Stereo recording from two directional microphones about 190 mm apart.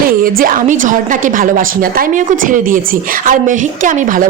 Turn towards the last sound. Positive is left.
turn(degrees=-45)  # may be behind; listen again after turning